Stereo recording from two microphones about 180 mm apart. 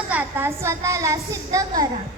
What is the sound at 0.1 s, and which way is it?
A woman's voice, 10° right (ahead or behind).